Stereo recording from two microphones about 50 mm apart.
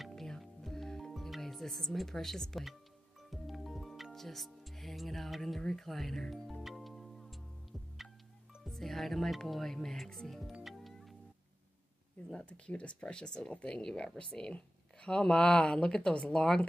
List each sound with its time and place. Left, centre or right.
0.1 s music: centre
5.6 s speech: centre
6.6 s music: centre
8.6 s speech: centre
10.6 s music: centre
12.4 s speech: left